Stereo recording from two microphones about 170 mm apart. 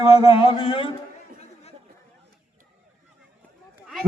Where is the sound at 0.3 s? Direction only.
35° left (ahead or behind).